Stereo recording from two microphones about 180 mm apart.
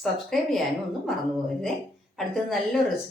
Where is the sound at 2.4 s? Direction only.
Centre (ahead or behind).